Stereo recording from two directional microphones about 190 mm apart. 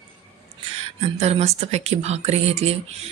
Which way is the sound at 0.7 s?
35° right (ahead or behind).